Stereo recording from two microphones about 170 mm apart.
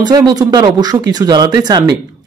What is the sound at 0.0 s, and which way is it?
Speech, 25° right (ahead or behind).